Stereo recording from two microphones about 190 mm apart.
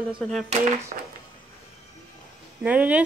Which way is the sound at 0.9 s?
45° right (ahead or behind).